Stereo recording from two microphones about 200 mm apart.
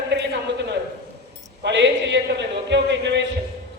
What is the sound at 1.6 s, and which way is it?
A man's voice, 60° right (ahead or behind).